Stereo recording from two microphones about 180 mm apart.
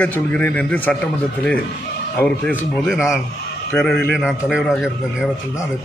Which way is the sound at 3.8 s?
5° left (ahead or behind).